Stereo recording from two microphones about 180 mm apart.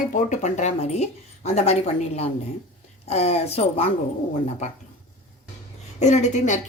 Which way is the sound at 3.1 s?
35° left (ahead or behind).